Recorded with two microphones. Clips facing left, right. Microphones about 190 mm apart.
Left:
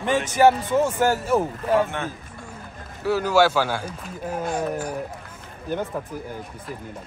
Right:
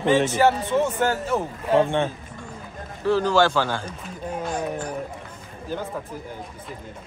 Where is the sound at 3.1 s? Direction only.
10° left (ahead or behind).